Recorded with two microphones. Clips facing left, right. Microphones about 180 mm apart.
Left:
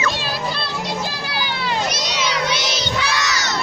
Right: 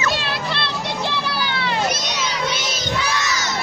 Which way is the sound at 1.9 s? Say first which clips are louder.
Left 2 dB; 70° left (ahead or behind).